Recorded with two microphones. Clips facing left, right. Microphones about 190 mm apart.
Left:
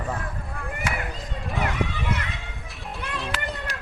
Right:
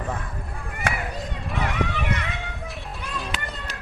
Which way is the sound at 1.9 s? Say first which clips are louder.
Right 1 dB; 65° right (ahead or behind).